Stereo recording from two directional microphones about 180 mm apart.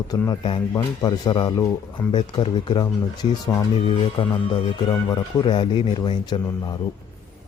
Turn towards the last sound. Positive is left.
turn(degrees=20)  # may be behind; listen again after turning